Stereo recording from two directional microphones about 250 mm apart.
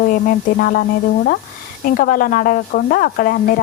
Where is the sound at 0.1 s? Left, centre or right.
Left.